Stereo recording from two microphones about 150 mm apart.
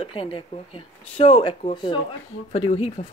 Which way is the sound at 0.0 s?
35° left (ahead or behind).